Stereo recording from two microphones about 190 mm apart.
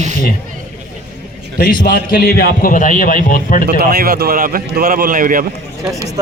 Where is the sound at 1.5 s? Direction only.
50° left (ahead or behind).